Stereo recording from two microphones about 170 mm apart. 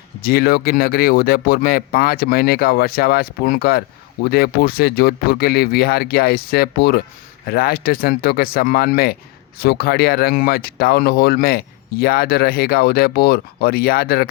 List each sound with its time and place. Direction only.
0.2 s speech: 60° left (ahead or behind)